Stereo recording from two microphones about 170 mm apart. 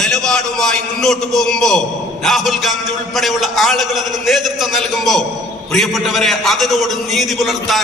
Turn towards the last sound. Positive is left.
turn(degrees=0)  # may be behind; listen again after turning